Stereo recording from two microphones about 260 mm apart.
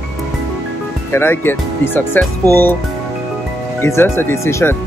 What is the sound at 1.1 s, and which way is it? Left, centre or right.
Speech, centre.